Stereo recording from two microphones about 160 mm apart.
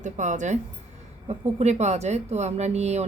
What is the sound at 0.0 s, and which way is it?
A woman's voice, 50° right (ahead or behind).